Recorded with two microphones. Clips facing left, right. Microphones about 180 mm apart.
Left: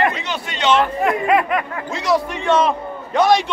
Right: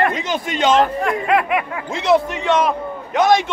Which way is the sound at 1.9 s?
20° right (ahead or behind).